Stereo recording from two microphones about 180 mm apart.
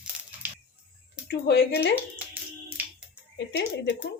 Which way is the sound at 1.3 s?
70° left (ahead or behind).